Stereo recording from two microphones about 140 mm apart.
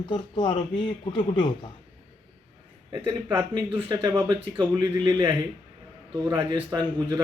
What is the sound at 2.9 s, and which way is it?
A man's voice, 30° right (ahead or behind).